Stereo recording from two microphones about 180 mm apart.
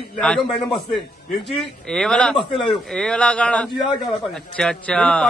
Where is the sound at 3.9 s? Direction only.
25° left (ahead or behind).